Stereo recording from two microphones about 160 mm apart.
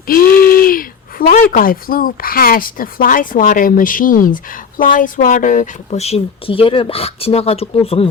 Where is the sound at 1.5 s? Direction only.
65° left (ahead or behind).